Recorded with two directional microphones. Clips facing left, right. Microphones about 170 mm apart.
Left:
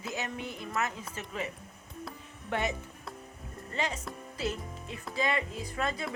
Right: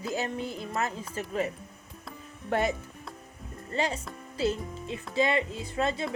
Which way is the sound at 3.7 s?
35° right (ahead or behind).